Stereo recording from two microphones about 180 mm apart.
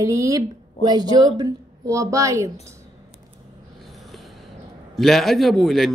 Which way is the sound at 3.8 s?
Centre (ahead or behind).